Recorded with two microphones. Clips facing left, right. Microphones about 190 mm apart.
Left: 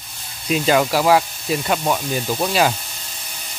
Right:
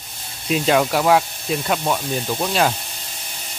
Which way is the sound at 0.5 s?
Centre (ahead or behind).